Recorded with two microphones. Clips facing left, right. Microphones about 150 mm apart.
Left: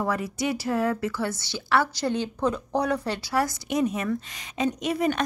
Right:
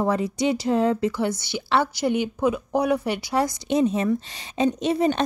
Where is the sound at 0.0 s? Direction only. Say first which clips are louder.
Right 5 dB; 25° right (ahead or behind).